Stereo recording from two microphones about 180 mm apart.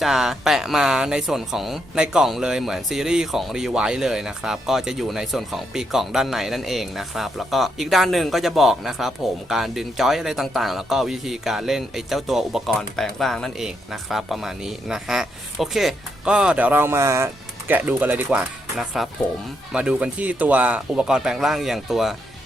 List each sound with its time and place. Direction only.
0.0 s speech: centre (ahead or behind)